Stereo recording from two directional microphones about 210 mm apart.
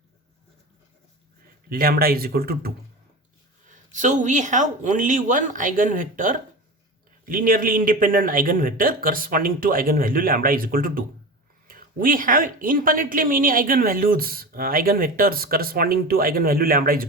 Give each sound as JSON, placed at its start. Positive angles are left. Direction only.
{"t": 1.7, "sound": "speech", "side_deg": -45}
{"t": 3.7, "sound": "speech", "side_deg": -35}